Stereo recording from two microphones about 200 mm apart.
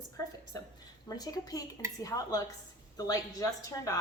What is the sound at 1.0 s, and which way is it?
A woman's voice, 20° left (ahead or behind).